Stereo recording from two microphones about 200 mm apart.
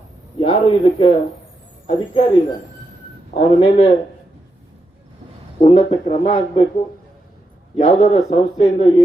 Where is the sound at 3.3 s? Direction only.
30° left (ahead or behind).